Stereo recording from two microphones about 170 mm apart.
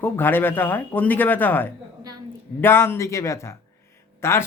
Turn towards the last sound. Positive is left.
turn(degrees=15)  # may be behind; listen again after turning